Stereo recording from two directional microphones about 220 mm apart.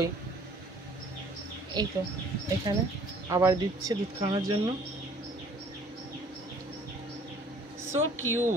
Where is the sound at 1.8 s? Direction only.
20° right (ahead or behind).